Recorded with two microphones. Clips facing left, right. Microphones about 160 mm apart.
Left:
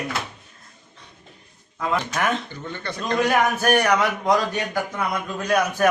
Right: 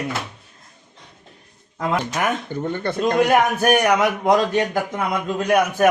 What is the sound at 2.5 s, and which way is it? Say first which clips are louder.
Speech: right 8 dB; 50° right (ahead or behind).